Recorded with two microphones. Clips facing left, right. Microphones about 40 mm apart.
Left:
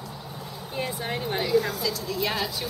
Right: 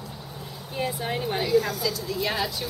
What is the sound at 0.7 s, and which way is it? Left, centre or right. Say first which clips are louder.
A woman's voice: right 2 dB; centre.